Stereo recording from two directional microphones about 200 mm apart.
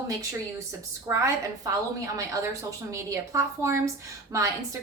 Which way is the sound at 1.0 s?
15° right (ahead or behind).